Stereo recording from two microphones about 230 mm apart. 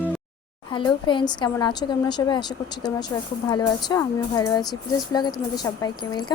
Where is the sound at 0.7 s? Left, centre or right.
Left.